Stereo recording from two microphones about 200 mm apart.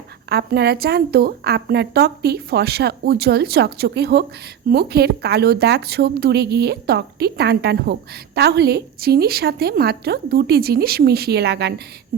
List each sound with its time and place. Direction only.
0.3 s speech: 55° right (ahead or behind)